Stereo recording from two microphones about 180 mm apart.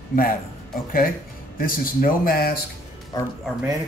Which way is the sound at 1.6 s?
50° left (ahead or behind).